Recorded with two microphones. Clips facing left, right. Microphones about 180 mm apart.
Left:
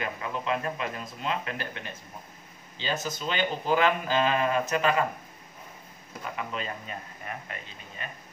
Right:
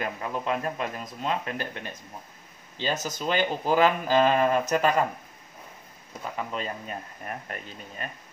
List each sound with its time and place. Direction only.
0.0 s speech: 45° right (ahead or behind)
2.8 s speech: 45° right (ahead or behind)
6.5 s speech: 40° right (ahead or behind)